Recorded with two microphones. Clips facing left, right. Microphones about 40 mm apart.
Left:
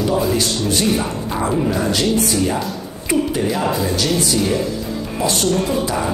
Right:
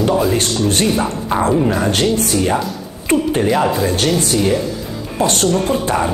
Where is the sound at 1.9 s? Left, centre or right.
Right.